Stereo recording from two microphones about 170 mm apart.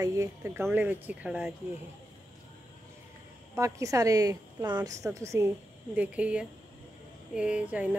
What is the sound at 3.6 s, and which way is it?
A woman's voice, 20° right (ahead or behind).